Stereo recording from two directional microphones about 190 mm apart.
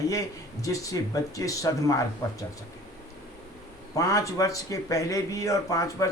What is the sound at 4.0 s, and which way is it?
Speech, 20° left (ahead or behind).